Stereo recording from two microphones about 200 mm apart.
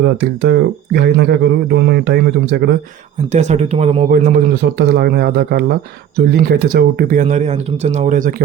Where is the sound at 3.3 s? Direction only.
35° right (ahead or behind).